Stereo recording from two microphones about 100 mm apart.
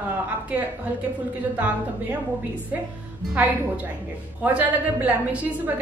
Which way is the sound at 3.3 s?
15° right (ahead or behind).